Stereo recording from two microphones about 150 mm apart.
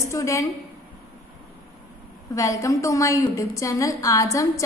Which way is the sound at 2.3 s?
20° left (ahead or behind).